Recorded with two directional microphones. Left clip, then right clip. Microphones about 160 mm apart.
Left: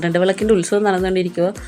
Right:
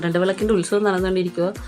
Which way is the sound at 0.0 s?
15° left (ahead or behind).